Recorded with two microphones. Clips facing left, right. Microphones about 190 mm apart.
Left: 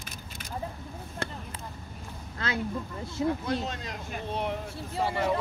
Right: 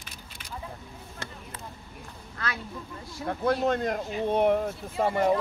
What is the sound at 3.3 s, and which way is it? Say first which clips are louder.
Speech: right 8 dB; 55° right (ahead or behind).